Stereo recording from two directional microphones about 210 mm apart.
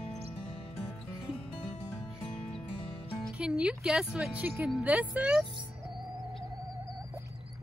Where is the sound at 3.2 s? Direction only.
5° right (ahead or behind).